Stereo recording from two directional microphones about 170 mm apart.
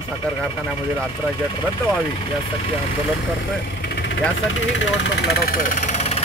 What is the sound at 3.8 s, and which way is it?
Vehicle, 90° left.